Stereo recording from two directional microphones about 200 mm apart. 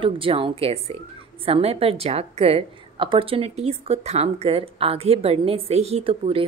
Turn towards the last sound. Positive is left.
turn(degrees=-25)  # may be behind; listen again after turning